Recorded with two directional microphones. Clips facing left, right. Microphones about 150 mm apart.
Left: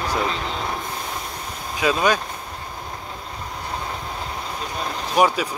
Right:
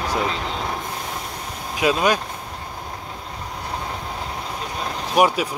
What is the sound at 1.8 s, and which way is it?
Speech, 5° right (ahead or behind).